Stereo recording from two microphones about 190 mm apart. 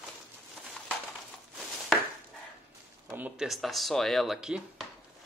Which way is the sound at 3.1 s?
10° right (ahead or behind).